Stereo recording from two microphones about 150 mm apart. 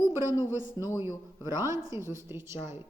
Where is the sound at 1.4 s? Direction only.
20° right (ahead or behind).